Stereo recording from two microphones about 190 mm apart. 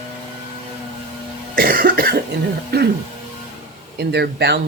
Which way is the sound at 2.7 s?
55° right (ahead or behind).